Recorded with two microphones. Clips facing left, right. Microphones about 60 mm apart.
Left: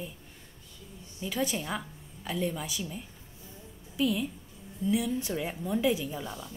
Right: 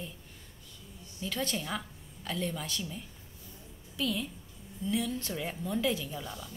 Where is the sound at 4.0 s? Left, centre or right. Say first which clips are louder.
Left 5 dB; centre.